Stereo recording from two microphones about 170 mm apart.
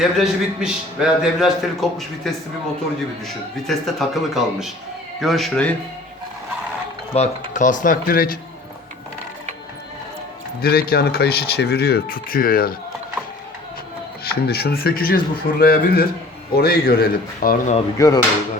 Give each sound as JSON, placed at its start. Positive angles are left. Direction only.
{"t": 0.0, "sound": "a man's voice", "side_deg": 0}
{"t": 3.7, "sound": "a man's voice", "side_deg": 0}
{"t": 7.1, "sound": "speech", "side_deg": 40}
{"t": 7.5, "sound": "speech", "side_deg": 50}
{"t": 10.6, "sound": "speech", "side_deg": 65}
{"t": 14.4, "sound": "speech", "side_deg": 65}
{"t": 17.9, "sound": "speech", "side_deg": 20}